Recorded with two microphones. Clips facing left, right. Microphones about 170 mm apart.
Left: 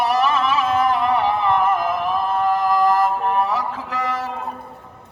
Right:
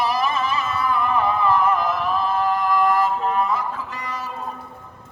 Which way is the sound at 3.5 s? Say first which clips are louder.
Left 2 dB; 90° left.